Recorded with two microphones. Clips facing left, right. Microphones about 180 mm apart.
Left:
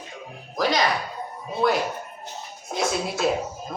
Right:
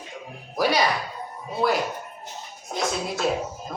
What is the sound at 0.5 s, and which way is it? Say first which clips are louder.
A man's voice: even; 10° right (ahead or behind).